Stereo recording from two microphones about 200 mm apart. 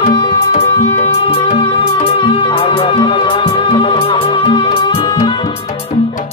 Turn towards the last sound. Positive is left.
turn(degrees=20)  # may be behind; listen again after turning